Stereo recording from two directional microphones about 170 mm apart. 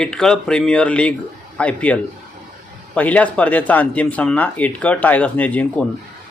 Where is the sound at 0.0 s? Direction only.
5° left (ahead or behind).